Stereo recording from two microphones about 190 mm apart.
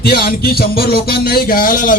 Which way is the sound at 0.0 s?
55° left (ahead or behind).